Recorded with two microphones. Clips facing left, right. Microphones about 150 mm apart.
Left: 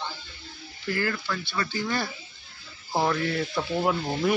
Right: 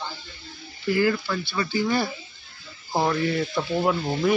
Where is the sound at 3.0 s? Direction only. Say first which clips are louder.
Right 3 dB; 10° right (ahead or behind).